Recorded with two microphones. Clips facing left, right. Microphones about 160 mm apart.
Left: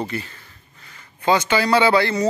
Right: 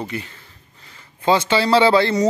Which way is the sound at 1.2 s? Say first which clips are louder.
Right 1 dB; 25° right (ahead or behind).